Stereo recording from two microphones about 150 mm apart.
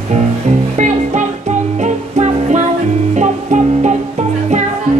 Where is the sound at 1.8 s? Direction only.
50° right (ahead or behind).